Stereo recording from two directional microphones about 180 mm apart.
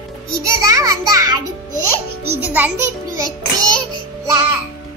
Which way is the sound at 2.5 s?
10° right (ahead or behind).